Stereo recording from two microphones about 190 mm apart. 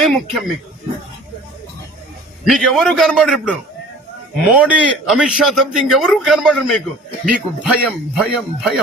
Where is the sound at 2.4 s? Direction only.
Centre (ahead or behind).